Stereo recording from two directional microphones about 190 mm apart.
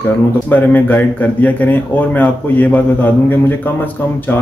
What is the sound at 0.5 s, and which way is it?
Speech, 10° left (ahead or behind).